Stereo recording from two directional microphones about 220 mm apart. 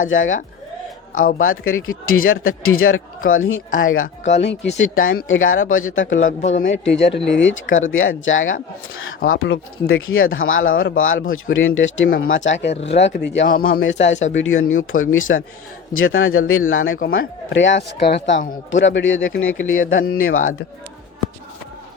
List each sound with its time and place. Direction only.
0.1 s speech: 65° left (ahead or behind)
1.4 s speech: 65° left (ahead or behind)
4.2 s speech: 30° left (ahead or behind)
4.8 s speech: 65° left (ahead or behind)
6.1 s speech: 30° left (ahead or behind)
6.8 s speech: 55° left (ahead or behind)
13.8 s speech: 55° left (ahead or behind)